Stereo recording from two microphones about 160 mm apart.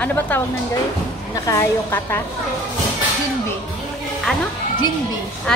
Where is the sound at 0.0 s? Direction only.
10° left (ahead or behind).